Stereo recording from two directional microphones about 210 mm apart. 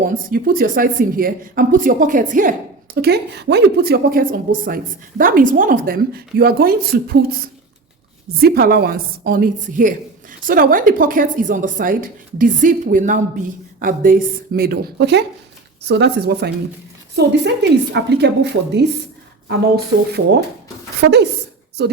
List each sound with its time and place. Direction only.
0.0 s a woman's voice: 40° right (ahead or behind)
8.4 s a woman's voice: 45° right (ahead or behind)